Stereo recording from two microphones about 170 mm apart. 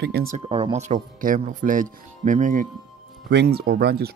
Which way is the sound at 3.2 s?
70° right (ahead or behind).